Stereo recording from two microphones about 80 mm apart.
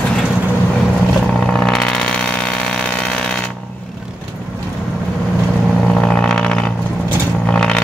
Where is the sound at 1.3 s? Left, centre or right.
Centre.